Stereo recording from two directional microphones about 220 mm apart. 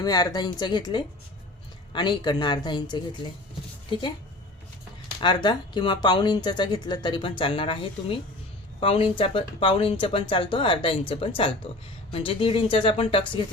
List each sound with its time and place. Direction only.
0.0 s speech: 15° left (ahead or behind)
5.2 s speech: 20° left (ahead or behind)